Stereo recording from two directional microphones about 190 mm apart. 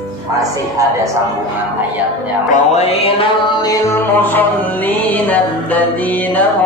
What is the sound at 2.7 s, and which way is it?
Music, 30° left (ahead or behind).